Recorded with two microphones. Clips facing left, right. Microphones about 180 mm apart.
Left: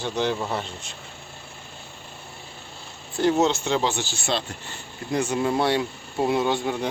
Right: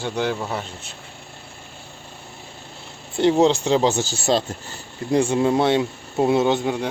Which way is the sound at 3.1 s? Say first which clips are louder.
Right 4 dB; 30° right (ahead or behind).